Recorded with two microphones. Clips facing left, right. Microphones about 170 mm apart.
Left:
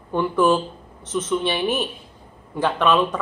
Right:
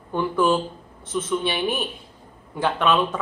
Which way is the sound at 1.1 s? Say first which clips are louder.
Left 2 dB; 20° left (ahead or behind).